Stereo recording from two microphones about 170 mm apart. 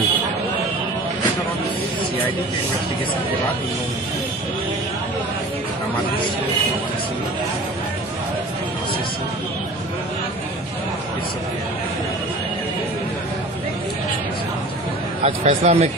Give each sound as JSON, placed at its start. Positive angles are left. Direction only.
{"t": 15.2, "sound": "speech", "side_deg": -35}